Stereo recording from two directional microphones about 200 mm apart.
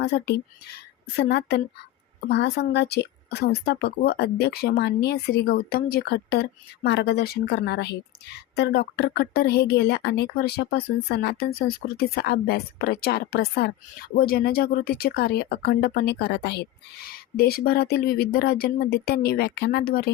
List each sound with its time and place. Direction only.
0.0 s a woman's voice: 60° left (ahead or behind)